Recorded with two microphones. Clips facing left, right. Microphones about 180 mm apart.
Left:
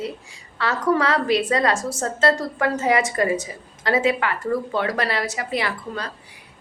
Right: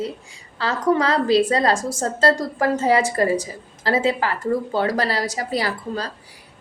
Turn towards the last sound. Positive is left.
turn(degrees=-35)  # may be behind; listen again after turning